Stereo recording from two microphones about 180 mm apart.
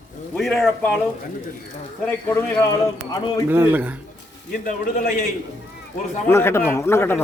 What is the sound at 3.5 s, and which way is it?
Speech, 10° right (ahead or behind).